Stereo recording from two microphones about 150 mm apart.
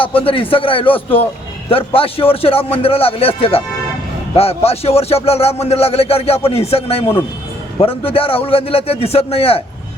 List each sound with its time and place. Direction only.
0.2 s a man's voice: 35° left (ahead or behind)